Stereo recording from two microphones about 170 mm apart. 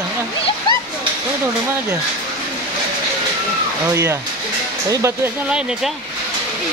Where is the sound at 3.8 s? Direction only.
15° right (ahead or behind).